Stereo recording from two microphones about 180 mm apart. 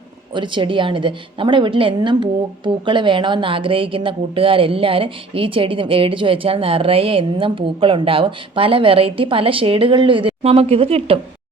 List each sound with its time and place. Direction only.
0.3 s a woman's voice: 25° right (ahead or behind)